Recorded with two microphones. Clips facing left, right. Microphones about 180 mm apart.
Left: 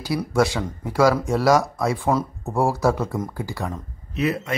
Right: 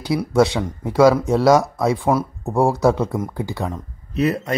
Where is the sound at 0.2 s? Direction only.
20° right (ahead or behind).